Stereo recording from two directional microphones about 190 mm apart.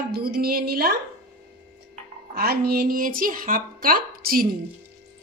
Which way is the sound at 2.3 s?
55° right (ahead or behind).